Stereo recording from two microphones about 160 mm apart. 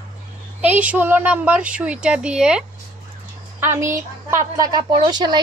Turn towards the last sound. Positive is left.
turn(degrees=-25)  # may be behind; listen again after turning